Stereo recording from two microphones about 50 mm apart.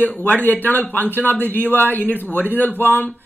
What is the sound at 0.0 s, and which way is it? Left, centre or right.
A woman's voice, left.